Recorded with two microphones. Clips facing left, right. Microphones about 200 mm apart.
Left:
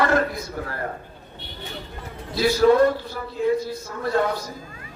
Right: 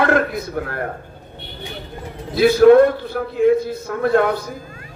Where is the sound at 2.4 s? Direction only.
60° right (ahead or behind).